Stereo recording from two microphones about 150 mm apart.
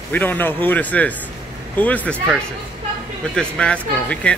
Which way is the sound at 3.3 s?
5° left (ahead or behind).